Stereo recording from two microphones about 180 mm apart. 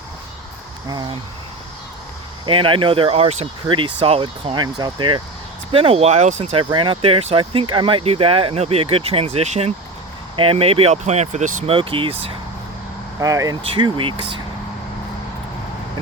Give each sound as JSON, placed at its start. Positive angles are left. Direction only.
{"t": 0.9, "sound": "speech", "side_deg": -25}
{"t": 2.5, "sound": "speech", "side_deg": -30}
{"t": 6.7, "sound": "speech", "side_deg": -25}
{"t": 13.1, "sound": "speech", "side_deg": -20}